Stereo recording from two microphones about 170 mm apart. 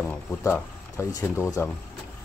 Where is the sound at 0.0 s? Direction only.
10° left (ahead or behind).